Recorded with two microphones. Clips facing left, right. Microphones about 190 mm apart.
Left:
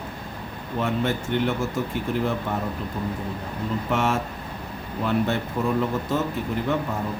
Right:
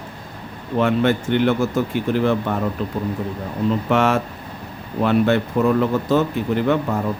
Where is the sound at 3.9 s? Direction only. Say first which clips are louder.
Right 4 dB; 70° right (ahead or behind).